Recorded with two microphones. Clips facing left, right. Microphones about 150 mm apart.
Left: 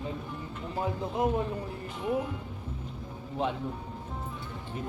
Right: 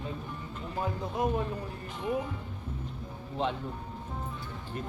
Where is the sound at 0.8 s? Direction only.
20° left (ahead or behind).